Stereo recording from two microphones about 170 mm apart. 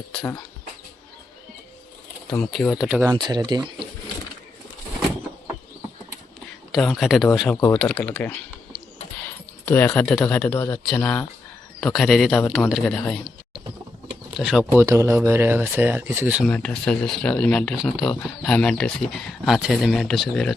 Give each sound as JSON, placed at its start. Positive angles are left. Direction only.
{"t": 2.3, "sound": "speech", "side_deg": 5}
{"t": 3.1, "sound": "speech", "side_deg": -25}
{"t": 6.7, "sound": "speech", "side_deg": 0}
{"t": 9.6, "sound": "speech", "side_deg": 10}
{"t": 16.5, "sound": "speech", "side_deg": 5}